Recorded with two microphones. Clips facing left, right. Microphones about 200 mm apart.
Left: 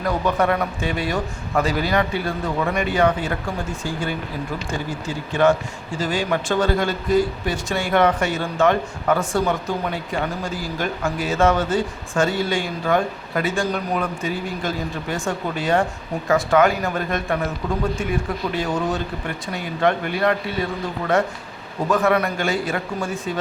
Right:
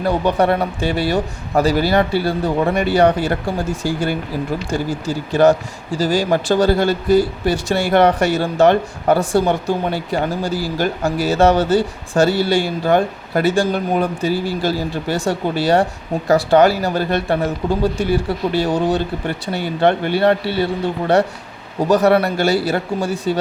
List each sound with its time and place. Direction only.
0.0 s speech: 30° right (ahead or behind)
3.8 s speech: 85° right
4.7 s speech: 40° right (ahead or behind)